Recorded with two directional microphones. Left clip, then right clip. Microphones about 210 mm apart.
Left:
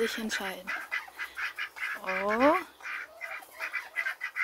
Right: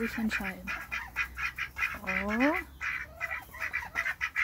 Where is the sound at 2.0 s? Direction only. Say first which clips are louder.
Left 6 dB; 15° left (ahead or behind).